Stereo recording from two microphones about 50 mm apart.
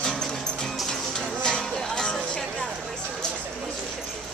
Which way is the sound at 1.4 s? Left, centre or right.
Centre.